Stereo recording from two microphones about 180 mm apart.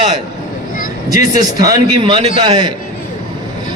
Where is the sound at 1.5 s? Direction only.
20° right (ahead or behind).